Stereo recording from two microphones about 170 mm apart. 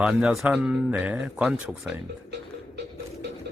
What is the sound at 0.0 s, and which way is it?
Speech, 5° right (ahead or behind).